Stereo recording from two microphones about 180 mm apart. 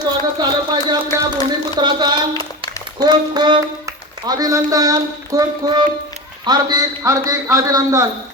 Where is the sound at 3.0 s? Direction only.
25° right (ahead or behind).